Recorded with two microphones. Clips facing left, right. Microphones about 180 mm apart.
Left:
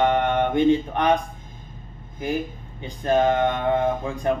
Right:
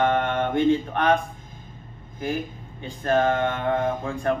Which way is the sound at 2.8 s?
15° left (ahead or behind).